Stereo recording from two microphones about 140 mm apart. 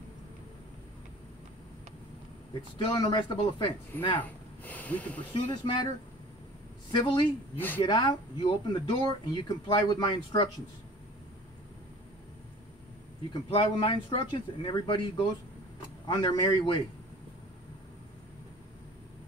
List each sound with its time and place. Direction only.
2.8 s speech: 30° left (ahead or behind)
4.2 s speech: 10° left (ahead or behind)
5.5 s speech: 35° left (ahead or behind)
6.9 s speech: 30° left (ahead or behind)
7.5 s a woman's voice: 15° left (ahead or behind)
7.8 s speech: 30° left (ahead or behind)
13.3 s speech: 35° left (ahead or behind)